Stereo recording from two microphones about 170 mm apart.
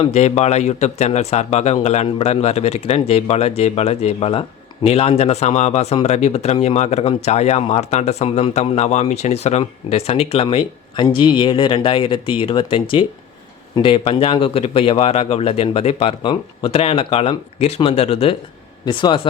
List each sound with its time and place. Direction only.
0.0 s speech: 40° left (ahead or behind)